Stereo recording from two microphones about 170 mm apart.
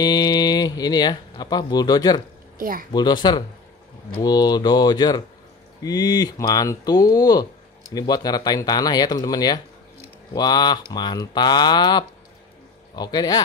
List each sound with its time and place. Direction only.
0.0 s speech: 25° left (ahead or behind)
2.5 s speech: 55° right (ahead or behind)
2.9 s speech: 25° left (ahead or behind)